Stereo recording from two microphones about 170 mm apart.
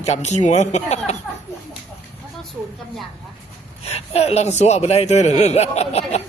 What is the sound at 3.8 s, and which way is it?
Speech, 40° left (ahead or behind).